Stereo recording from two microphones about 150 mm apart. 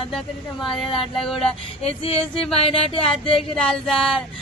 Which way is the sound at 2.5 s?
40° left (ahead or behind).